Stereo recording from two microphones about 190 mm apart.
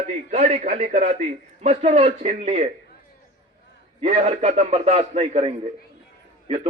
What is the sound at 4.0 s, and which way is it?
A man's voice, 30° right (ahead or behind).